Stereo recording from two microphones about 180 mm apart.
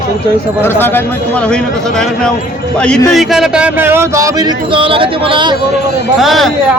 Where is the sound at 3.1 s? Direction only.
Centre (ahead or behind); by 5.5 s 25° right (ahead or behind).